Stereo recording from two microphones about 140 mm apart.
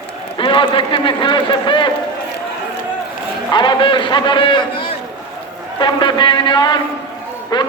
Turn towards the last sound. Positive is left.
turn(degrees=30)  # may be behind; listen again after turning